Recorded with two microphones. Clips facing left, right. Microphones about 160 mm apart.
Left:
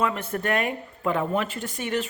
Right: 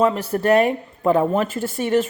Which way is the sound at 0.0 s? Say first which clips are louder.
Right 7 dB; 35° right (ahead or behind).